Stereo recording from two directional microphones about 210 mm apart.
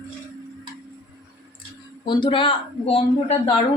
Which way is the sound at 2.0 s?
20° left (ahead or behind).